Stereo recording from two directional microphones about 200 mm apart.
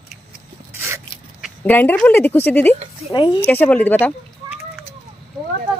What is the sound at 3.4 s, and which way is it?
Speech, 10° left (ahead or behind).